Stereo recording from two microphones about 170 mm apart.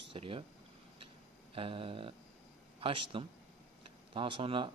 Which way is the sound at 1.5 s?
30° right (ahead or behind).